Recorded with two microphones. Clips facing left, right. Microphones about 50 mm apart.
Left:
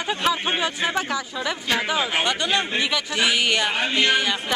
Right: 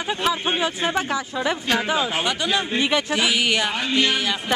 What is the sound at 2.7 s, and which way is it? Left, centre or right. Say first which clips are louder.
Speech: right 3 dB; right.